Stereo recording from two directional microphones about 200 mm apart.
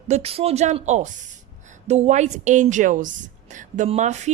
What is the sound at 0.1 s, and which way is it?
Speech, 30° right (ahead or behind).